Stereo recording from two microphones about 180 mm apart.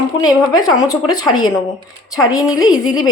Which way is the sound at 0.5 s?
20° left (ahead or behind).